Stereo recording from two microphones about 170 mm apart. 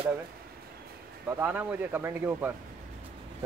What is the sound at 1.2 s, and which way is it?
Speech, 15° right (ahead or behind).